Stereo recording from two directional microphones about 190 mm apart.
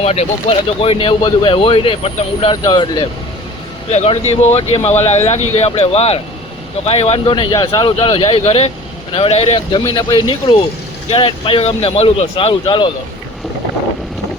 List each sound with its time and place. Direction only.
0.0 s speech: 35° left (ahead or behind)
3.9 s speech: 35° left (ahead or behind)